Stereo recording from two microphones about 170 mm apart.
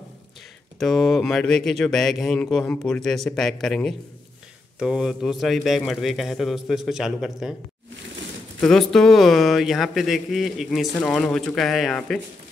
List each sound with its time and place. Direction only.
0.7 s a man's voice: centre (ahead or behind)
8.5 s a man's voice: centre (ahead or behind)